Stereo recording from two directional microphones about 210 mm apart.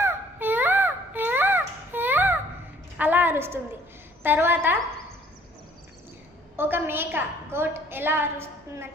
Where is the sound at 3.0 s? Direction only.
10° right (ahead or behind).